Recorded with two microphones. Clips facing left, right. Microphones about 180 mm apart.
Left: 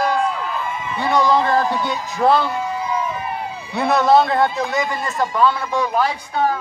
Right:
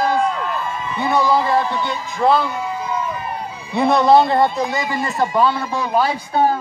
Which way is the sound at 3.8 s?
Centre (ahead or behind).